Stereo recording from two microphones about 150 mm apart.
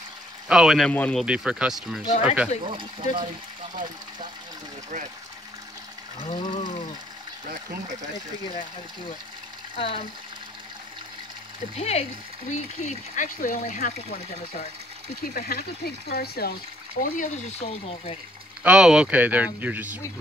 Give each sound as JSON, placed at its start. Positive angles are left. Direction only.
{"t": 0.5, "sound": "speech", "side_deg": -5}
{"t": 1.2, "sound": "speech", "side_deg": -5}
{"t": 2.6, "sound": "speech", "side_deg": -35}
{"t": 6.2, "sound": "speech", "side_deg": 30}
{"t": 9.8, "sound": "speech", "side_deg": 40}
{"t": 11.7, "sound": "speech", "side_deg": 45}
{"t": 15.2, "sound": "speech", "side_deg": 75}
{"t": 17.0, "sound": "speech", "side_deg": 60}
{"t": 17.6, "sound": "speech", "side_deg": 40}
{"t": 18.6, "sound": "speech", "side_deg": -5}